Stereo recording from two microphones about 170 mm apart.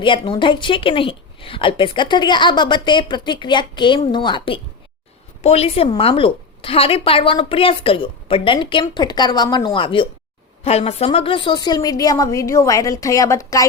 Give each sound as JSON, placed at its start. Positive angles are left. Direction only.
{"t": 0.0, "sound": "a woman's voice", "side_deg": 30}